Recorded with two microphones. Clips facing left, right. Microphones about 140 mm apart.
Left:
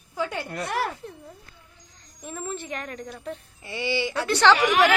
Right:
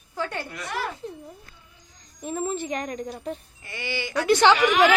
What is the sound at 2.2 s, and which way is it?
Speech, 20° right (ahead or behind).